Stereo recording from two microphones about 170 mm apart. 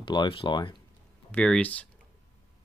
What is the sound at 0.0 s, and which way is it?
Speech, 25° left (ahead or behind).